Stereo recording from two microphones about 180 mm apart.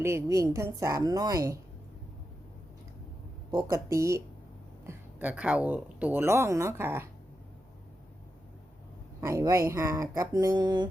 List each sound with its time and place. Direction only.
0.0 s speech: 15° right (ahead or behind)
3.5 s speech: 20° right (ahead or behind)
9.2 s speech: 15° right (ahead or behind)